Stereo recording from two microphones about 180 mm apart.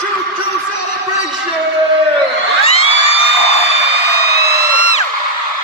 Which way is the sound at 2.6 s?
35° left (ahead or behind).